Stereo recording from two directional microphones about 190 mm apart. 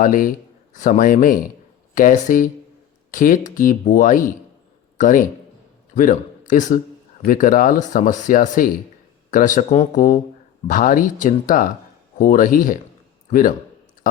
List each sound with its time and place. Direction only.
0.0 s a man's voice: 45° left (ahead or behind)